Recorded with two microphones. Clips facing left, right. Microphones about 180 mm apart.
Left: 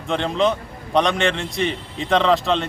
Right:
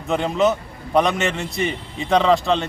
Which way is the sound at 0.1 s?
5° right (ahead or behind).